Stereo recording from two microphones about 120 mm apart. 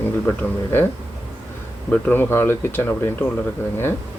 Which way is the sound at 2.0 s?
15° left (ahead or behind).